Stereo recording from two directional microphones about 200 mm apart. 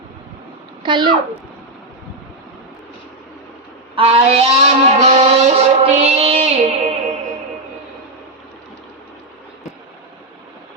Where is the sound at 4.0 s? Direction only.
30° right (ahead or behind).